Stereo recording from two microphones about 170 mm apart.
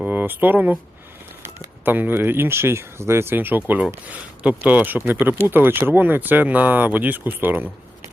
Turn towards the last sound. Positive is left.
turn(degrees=-10)  # may be behind; listen again after turning